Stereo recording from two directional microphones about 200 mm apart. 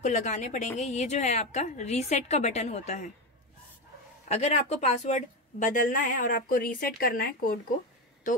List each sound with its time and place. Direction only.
0.0 s speech: 35° left (ahead or behind)
4.3 s speech: 35° left (ahead or behind)